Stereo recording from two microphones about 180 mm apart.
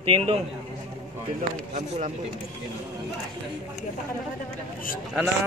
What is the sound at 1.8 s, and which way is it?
Speech, 40° right (ahead or behind).